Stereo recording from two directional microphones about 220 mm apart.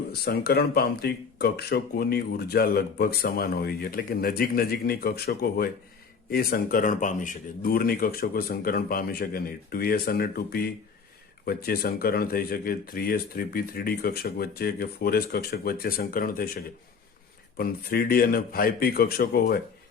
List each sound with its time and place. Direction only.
0.1 s speech: 45° left (ahead or behind)